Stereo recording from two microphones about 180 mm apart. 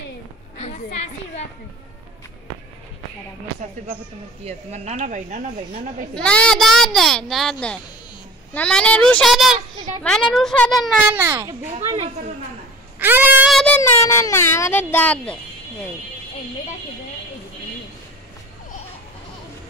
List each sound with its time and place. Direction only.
0.6 s a sound: 40° left (ahead or behind)
4.5 s speech: 35° right (ahead or behind)
6.1 s a child's voice: 5° left (ahead or behind)
8.5 s a child's voice: 5° left (ahead or behind)
11.1 s a child's voice: 15° right (ahead or behind)
13.0 s speech: 10° right (ahead or behind)
13.5 s child singing: centre (ahead or behind)
14.0 s a child's voice: 15° left (ahead or behind)